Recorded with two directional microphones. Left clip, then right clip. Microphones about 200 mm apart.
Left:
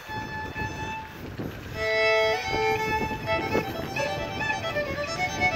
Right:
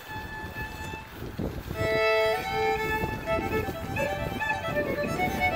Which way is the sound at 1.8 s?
40° right (ahead or behind).